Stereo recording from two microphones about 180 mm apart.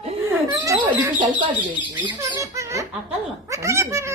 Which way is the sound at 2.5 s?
15° right (ahead or behind).